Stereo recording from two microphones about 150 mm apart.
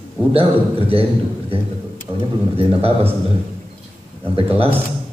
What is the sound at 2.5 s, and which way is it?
Speech, 40° right (ahead or behind).